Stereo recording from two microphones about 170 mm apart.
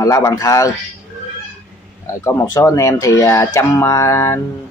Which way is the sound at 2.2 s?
15° left (ahead or behind).